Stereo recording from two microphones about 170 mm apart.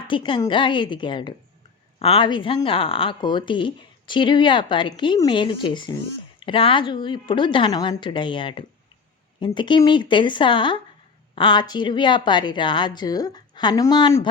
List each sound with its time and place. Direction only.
0.1 s speech: 25° left (ahead or behind)